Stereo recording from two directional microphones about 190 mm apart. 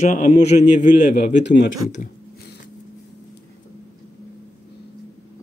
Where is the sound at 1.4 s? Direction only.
65° left (ahead or behind).